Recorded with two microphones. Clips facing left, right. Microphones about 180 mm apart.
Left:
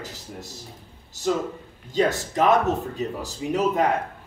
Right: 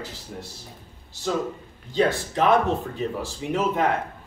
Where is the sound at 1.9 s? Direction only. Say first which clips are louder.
Even; 45° left (ahead or behind).